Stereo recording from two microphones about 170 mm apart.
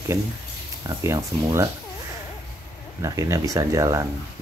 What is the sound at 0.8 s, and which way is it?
Speech, 15° right (ahead or behind).